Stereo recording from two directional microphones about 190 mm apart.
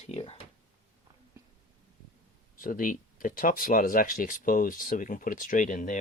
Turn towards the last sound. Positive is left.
turn(degrees=40)  # may be behind; listen again after turning